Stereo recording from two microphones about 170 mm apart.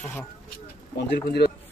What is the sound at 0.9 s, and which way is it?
Speech, 80° left.